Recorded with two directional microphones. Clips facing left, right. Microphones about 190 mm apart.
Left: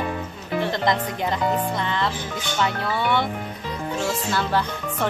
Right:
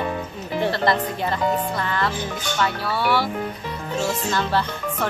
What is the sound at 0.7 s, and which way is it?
Speech, 15° left (ahead or behind).